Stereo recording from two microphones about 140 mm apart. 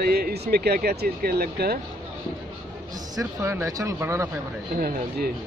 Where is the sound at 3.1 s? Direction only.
20° right (ahead or behind).